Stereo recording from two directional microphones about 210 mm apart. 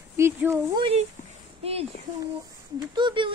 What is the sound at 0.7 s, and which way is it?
Speech, 25° right (ahead or behind).